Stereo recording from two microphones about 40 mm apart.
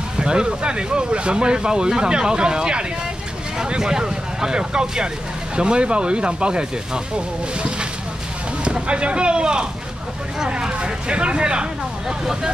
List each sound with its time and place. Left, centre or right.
0.2 s speech: right